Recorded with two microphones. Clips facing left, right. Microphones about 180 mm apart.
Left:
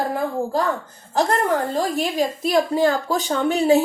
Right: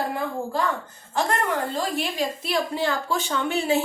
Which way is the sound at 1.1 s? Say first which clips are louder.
Left 5 dB; 40° left (ahead or behind).